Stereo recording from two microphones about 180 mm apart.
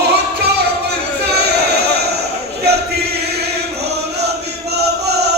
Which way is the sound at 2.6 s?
65° right (ahead or behind).